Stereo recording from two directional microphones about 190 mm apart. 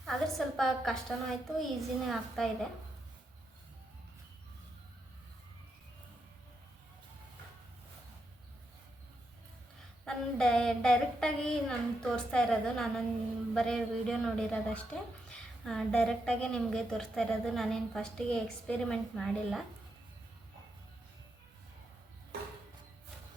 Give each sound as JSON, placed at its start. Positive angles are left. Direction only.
{"t": 0.0, "sound": "a woman's voice", "side_deg": 0}
{"t": 10.1, "sound": "a woman's voice", "side_deg": 5}